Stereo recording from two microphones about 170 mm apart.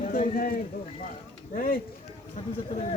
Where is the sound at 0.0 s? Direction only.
50° left (ahead or behind).